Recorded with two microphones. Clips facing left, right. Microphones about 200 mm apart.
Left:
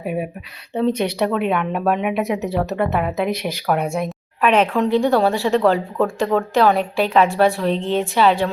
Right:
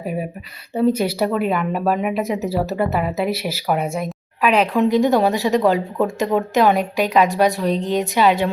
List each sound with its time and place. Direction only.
0.0 s speech: centre (ahead or behind); by 7.4 s 15° right (ahead or behind)
7.7 s a woman's voice: 40° right (ahead or behind)
8.2 s speech: 15° right (ahead or behind)